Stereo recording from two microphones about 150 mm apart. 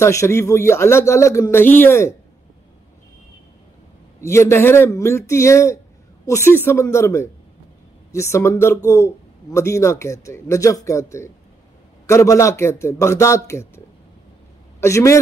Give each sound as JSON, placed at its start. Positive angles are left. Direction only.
{"t": 0.0, "sound": "speech", "side_deg": 20}
{"t": 4.2, "sound": "a man's voice", "side_deg": 20}